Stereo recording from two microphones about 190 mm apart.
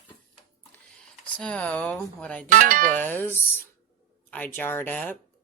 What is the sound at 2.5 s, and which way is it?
Speech, 45° right (ahead or behind).